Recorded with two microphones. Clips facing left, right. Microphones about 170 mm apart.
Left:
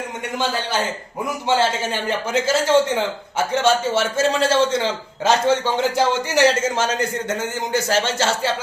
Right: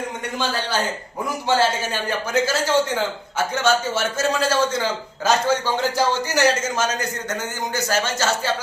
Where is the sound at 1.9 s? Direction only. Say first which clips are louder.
Left 2 dB; 25° left (ahead or behind).